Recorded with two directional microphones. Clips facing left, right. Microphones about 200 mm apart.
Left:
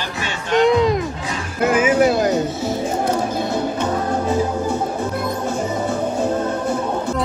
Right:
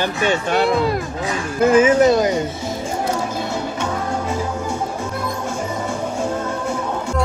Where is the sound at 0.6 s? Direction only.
5° right (ahead or behind).